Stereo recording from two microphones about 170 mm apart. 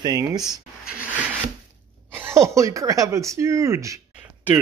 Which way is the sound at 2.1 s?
15° right (ahead or behind).